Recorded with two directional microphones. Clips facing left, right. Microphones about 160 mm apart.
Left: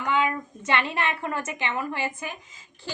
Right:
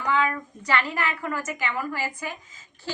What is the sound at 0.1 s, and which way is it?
A woman's voice, 20° left (ahead or behind).